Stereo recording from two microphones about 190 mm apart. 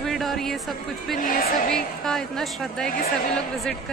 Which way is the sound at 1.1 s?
50° left (ahead or behind).